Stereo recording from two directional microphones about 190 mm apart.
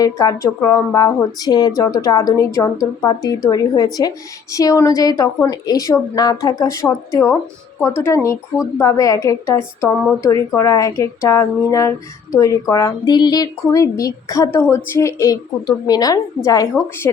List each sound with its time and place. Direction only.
0.0 s a woman's voice: 20° left (ahead or behind)